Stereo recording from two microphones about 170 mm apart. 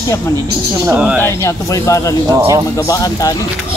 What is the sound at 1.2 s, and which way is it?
Speech, 20° left (ahead or behind).